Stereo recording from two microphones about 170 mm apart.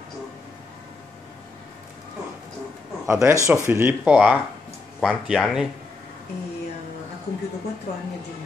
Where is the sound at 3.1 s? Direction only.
15° right (ahead or behind).